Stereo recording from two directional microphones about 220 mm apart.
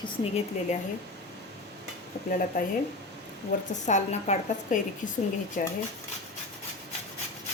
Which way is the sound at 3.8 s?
30° left (ahead or behind).